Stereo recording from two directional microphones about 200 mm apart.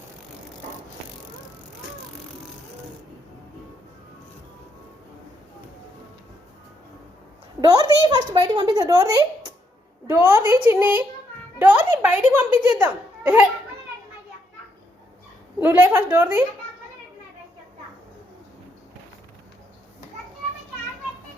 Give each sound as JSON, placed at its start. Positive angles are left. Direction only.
{"t": 7.6, "sound": "a child's voice", "side_deg": -20}
{"t": 15.6, "sound": "a child's voice", "side_deg": -10}